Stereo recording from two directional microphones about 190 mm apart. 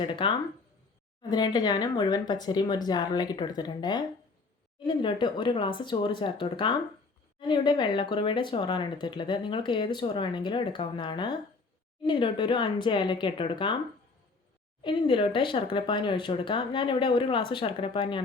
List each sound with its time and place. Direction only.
0.0 s speech: 25° left (ahead or behind)
14.8 s speech: 25° left (ahead or behind)